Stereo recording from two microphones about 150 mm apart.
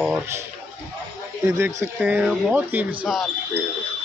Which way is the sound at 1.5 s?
20° right (ahead or behind).